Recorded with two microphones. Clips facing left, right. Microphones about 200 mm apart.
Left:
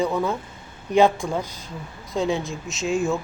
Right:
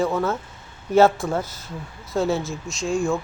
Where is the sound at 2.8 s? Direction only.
20° left (ahead or behind).